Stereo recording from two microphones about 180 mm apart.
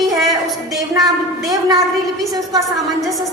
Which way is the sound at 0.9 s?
20° right (ahead or behind).